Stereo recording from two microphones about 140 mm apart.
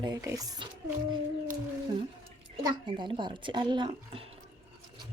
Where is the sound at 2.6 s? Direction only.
35° right (ahead or behind).